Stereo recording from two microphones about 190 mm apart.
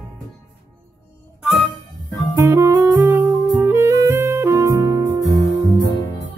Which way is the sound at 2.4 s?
15° right (ahead or behind).